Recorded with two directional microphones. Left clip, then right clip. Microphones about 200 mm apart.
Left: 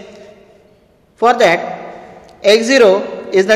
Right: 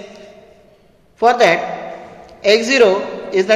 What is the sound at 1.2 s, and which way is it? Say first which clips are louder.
A man's voice: left 1 dB; 25° left (ahead or behind).